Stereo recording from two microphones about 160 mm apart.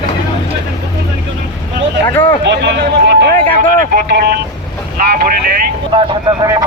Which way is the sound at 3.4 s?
60° right (ahead or behind).